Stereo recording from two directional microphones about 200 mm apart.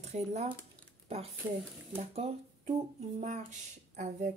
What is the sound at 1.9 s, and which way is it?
Speech, 30° right (ahead or behind).